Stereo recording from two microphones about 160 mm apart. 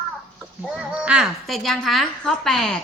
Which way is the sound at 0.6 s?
5° right (ahead or behind).